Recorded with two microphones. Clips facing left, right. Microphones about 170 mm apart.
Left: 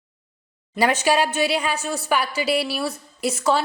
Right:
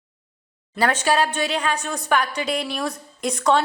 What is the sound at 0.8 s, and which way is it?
A woman's voice, 10° left (ahead or behind).